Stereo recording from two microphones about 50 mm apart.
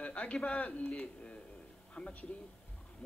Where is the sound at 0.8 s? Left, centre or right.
Centre.